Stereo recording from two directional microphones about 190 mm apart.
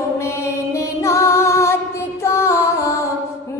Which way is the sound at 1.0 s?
15° left (ahead or behind).